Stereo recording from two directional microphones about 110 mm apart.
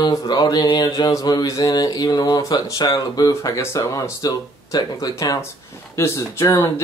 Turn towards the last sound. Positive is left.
turn(degrees=25)  # may be behind; listen again after turning